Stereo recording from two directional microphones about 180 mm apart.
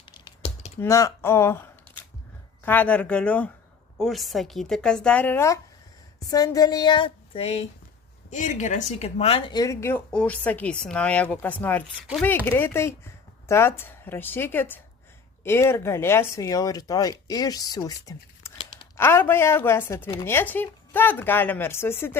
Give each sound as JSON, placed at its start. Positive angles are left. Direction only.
{"t": 0.8, "sound": "a woman's voice", "side_deg": 15}
{"t": 8.3, "sound": "speech", "side_deg": 45}